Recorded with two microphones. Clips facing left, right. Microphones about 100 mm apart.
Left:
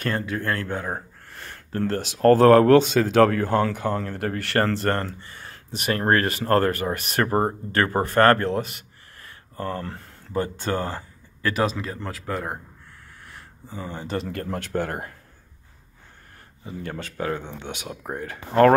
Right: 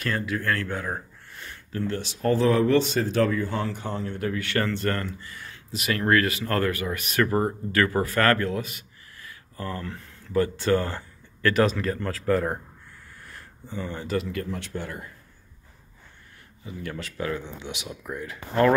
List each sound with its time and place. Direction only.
0.1 s speech: 30° left (ahead or behind)
1.3 s a sound: 45° left (ahead or behind)
1.8 s speech: 70° left (ahead or behind)
3.6 s speech: 90° left
3.9 s speech: 55° left (ahead or behind)
5.2 s speech: 30° left (ahead or behind)
9.2 s a sound: 35° left (ahead or behind)
10.4 s speech: 20° left (ahead or behind); by 12.5 s 5° left (ahead or behind)
13.8 s speech: 20° left (ahead or behind)
14.2 s speech: 50° left (ahead or behind)
16.6 s speech: 35° left (ahead or behind)